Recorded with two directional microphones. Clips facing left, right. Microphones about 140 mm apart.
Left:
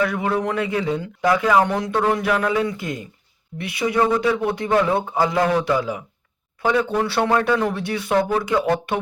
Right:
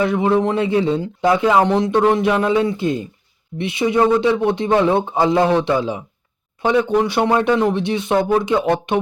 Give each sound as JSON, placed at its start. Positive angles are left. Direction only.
{"t": 0.0, "sound": "speech", "side_deg": -25}